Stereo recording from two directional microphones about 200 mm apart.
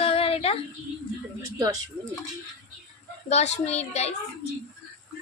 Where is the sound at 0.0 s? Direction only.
30° left (ahead or behind).